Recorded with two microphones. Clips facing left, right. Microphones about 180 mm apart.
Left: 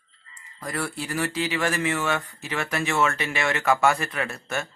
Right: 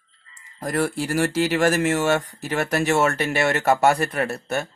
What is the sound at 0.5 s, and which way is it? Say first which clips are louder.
Speech: right 7 dB; 45° right (ahead or behind).